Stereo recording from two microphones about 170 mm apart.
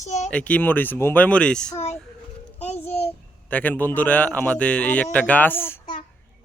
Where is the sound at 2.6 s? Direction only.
35° left (ahead or behind).